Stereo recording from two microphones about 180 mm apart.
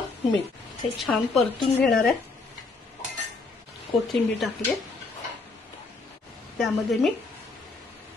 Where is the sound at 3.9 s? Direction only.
Centre (ahead or behind).